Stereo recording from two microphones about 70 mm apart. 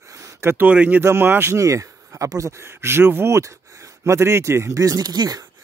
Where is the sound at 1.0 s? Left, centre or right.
Right.